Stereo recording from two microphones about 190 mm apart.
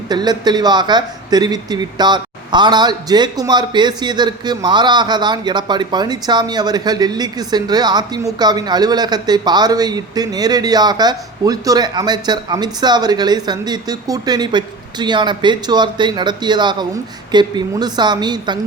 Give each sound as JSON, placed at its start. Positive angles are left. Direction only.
{"t": 0.1, "sound": "speech", "side_deg": -20}